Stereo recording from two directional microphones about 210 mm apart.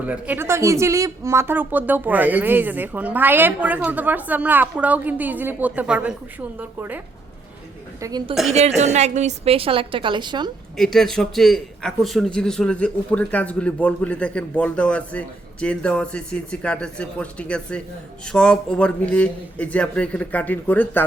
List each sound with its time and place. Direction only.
0.0 s speech: 5° right (ahead or behind)
8.0 s a woman's voice: 20° right (ahead or behind)
8.5 s a woman's voice: 30° right (ahead or behind)
10.8 s a man's voice: centre (ahead or behind)